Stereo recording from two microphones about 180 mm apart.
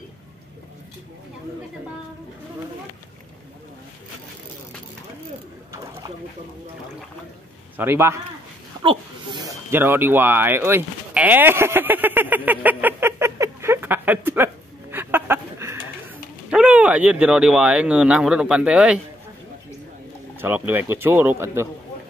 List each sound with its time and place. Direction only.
7.7 s speech: 10° right (ahead or behind)
8.8 s a sound: 25° right (ahead or behind)
9.7 s speech: 10° right (ahead or behind)
20.3 s speech: 10° right (ahead or behind)